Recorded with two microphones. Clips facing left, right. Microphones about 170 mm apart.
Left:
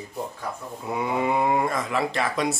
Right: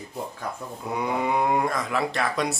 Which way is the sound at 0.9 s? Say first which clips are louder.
Left 1 dB; centre (ahead or behind).